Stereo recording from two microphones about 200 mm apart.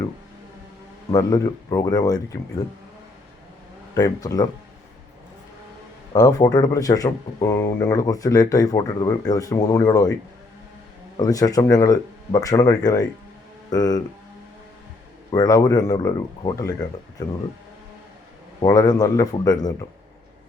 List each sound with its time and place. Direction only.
1.1 s speech: 20° left (ahead or behind)
3.9 s speech: 20° left (ahead or behind)
6.1 s speech: 20° left (ahead or behind)
11.2 s speech: 20° left (ahead or behind)
15.3 s speech: 20° left (ahead or behind)
18.6 s speech: 20° left (ahead or behind)